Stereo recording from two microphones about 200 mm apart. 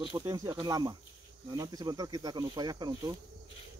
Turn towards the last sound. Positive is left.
turn(degrees=-20)  # may be behind; listen again after turning